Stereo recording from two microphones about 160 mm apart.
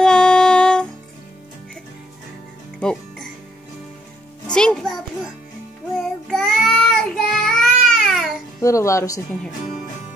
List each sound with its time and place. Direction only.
0.0 s music: 5° left (ahead or behind)
2.8 s music: 5° left (ahead or behind)
4.5 s music: 5° left (ahead or behind)
5.9 s child singing: centre (ahead or behind)
8.5 s speech: 20° left (ahead or behind)